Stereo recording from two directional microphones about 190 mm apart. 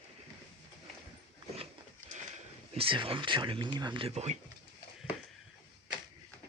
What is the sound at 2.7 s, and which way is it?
Speech, 25° right (ahead or behind).